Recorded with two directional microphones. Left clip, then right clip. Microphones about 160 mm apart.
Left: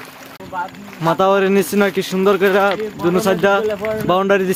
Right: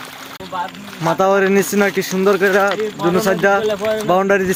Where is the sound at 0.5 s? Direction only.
55° right (ahead or behind).